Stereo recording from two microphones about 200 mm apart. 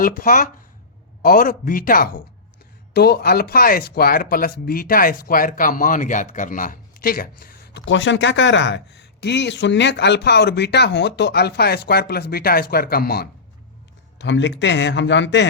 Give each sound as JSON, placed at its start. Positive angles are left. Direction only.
{"t": 0.2, "sound": "speech", "side_deg": 40}
{"t": 14.2, "sound": "a man's voice", "side_deg": 65}